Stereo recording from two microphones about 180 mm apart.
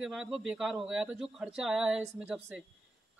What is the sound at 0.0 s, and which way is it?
A woman's voice, centre (ahead or behind).